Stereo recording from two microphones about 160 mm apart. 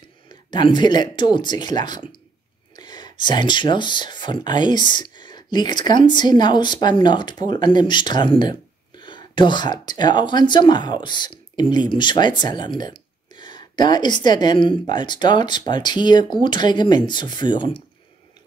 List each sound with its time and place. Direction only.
0.3 s speech: 30° left (ahead or behind)
13.3 s a sound: 30° left (ahead or behind)
13.7 s speech: 25° left (ahead or behind)